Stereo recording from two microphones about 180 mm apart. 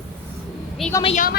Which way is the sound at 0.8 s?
Centre (ahead or behind).